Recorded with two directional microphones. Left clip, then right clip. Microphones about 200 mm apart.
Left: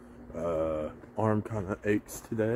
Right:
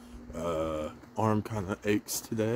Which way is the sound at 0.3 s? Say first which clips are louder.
Left 2 dB; 20° right (ahead or behind).